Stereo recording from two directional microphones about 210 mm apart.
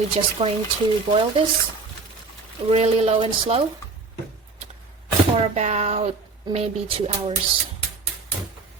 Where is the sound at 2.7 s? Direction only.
30° right (ahead or behind).